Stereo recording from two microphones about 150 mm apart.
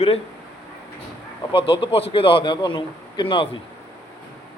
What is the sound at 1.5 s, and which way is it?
A man's voice, 35° left (ahead or behind).